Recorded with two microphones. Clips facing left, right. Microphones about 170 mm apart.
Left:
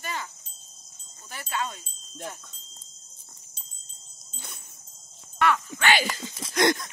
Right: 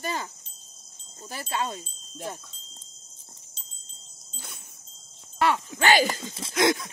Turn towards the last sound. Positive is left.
turn(degrees=-5)  # may be behind; listen again after turning